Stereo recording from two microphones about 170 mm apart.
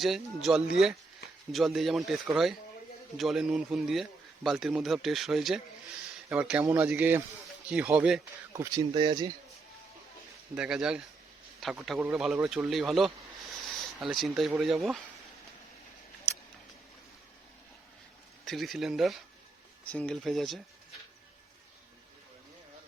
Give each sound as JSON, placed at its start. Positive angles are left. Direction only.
{"t": 0.0, "sound": "a man's voice", "side_deg": 0}
{"t": 8.5, "sound": "speech", "side_deg": -20}
{"t": 10.5, "sound": "a man's voice", "side_deg": -5}
{"t": 18.4, "sound": "a man's voice", "side_deg": 0}